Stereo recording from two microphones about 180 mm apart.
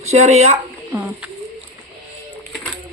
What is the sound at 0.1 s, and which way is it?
Speech, 35° right (ahead or behind).